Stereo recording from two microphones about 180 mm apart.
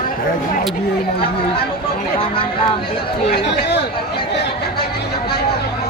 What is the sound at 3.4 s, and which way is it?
Speech, 65° left (ahead or behind).